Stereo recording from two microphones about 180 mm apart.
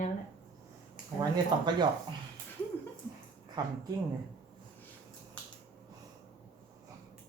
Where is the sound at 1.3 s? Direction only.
25° right (ahead or behind).